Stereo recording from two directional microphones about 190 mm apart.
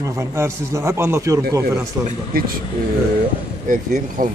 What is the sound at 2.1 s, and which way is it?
Speech, 50° right (ahead or behind).